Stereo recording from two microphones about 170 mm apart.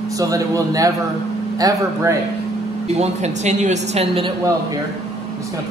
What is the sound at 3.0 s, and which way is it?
A woman's voice, 40° right (ahead or behind).